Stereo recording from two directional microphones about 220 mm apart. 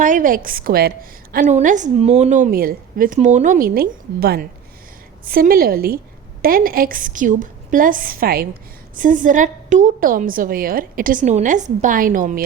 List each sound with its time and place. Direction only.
0.0 s a woman's voice: 35° right (ahead or behind)